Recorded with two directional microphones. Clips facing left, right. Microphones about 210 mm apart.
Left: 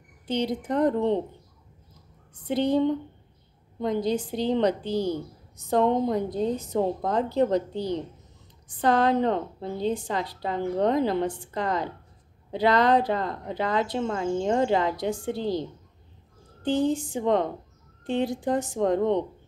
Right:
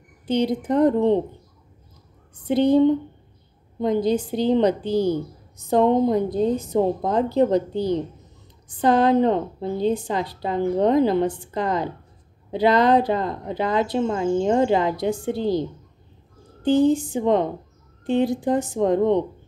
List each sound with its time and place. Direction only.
0.3 s speech: 10° right (ahead or behind)
2.4 s speech: 10° right (ahead or behind)
3.8 s speech: 10° right (ahead or behind)
16.6 s speech: 5° right (ahead or behind)